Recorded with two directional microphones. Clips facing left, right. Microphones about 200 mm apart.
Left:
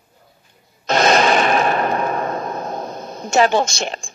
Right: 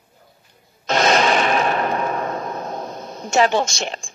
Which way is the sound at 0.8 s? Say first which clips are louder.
Left 2 dB; 45° left (ahead or behind).